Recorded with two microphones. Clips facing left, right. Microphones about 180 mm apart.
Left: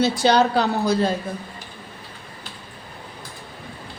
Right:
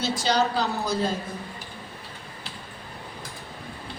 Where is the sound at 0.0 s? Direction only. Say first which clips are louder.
Left 6 dB; 60° left (ahead or behind).